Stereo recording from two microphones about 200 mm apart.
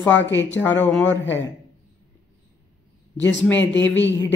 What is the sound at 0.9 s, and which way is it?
Speech, 10° left (ahead or behind).